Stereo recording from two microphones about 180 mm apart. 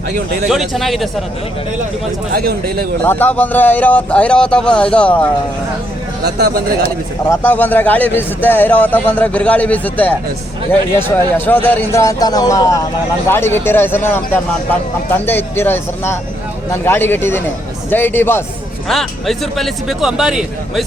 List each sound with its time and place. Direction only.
0.4 s speech: centre (ahead or behind)
2.3 s speech: 60° right (ahead or behind)
3.0 s a man's voice: 10° left (ahead or behind)
6.2 s speech: 65° right (ahead or behind)
7.3 s a man's voice: 10° left (ahead or behind)
18.9 s speech: centre (ahead or behind)